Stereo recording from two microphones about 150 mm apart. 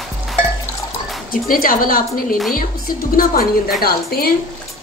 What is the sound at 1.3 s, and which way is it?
A woman's voice, 70° left (ahead or behind).